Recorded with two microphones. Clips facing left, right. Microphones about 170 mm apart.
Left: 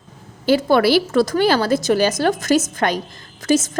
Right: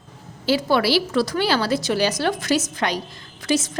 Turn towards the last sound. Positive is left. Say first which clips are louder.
# left 5 dB
turn(degrees=45)  # may be behind; listen again after turning